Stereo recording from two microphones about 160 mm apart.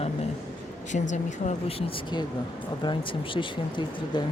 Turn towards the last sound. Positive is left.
turn(degrees=30)  # may be behind; listen again after turning